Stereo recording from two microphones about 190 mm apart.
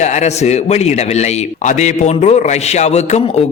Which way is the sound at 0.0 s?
35° left (ahead or behind).